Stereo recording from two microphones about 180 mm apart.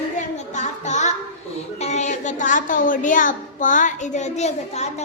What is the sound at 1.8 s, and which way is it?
A woman's voice, 40° left (ahead or behind).